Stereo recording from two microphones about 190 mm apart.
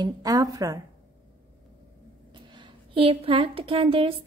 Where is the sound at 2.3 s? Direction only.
25° right (ahead or behind).